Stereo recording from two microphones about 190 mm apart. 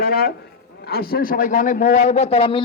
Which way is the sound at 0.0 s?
50° left (ahead or behind).